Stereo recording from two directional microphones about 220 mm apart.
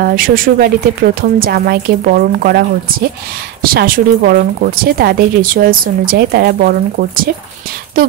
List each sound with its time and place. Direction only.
0.0 s speech: 40° right (ahead or behind)